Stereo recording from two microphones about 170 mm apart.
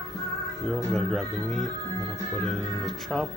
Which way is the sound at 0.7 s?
Centre (ahead or behind).